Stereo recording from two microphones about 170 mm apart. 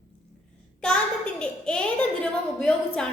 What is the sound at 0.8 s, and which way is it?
A child's voice, 5° left (ahead or behind).